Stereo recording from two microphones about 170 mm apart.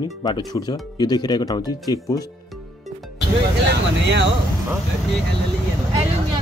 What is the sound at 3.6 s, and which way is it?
Speech, 85° right.